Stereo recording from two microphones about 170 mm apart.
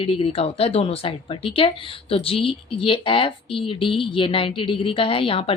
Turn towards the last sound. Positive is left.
turn(degrees=35)  # may be behind; listen again after turning